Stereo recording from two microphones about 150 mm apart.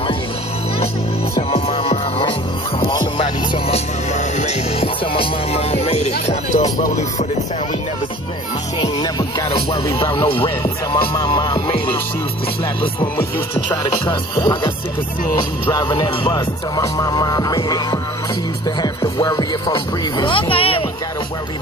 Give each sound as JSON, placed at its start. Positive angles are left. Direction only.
{"t": 1.5, "sound": "music", "side_deg": 40}
{"t": 10.1, "sound": "speech", "side_deg": 35}
{"t": 11.0, "sound": "music", "side_deg": 25}
{"t": 14.0, "sound": "music", "side_deg": 30}
{"t": 15.7, "sound": "music", "side_deg": 30}
{"t": 18.8, "sound": "speech", "side_deg": 30}